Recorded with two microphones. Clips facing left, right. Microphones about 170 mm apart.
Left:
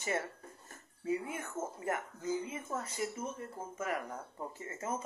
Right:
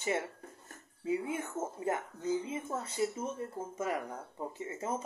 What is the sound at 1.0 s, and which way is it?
Speech, 15° right (ahead or behind).